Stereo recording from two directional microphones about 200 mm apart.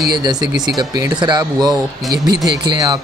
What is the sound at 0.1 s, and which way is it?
Speech, 20° right (ahead or behind).